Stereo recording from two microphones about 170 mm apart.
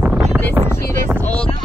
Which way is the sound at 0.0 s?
10° right (ahead or behind).